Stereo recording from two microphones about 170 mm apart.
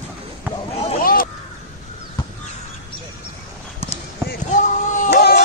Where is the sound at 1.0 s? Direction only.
60° left (ahead or behind).